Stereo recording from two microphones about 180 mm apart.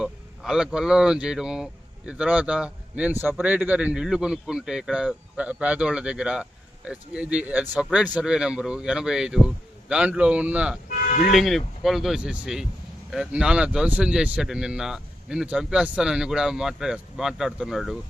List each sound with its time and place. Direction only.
0.0 s a man's voice: 5° right (ahead or behind)
10.8 s music: 50° left (ahead or behind)
11.3 s speech: centre (ahead or behind)